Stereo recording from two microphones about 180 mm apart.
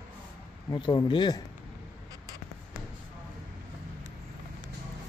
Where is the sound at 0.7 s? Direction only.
25° left (ahead or behind).